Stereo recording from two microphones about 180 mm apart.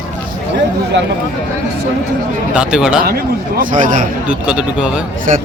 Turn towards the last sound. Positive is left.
turn(degrees=-5)  # may be behind; listen again after turning